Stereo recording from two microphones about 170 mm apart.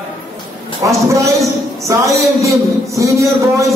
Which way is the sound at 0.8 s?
20° right (ahead or behind).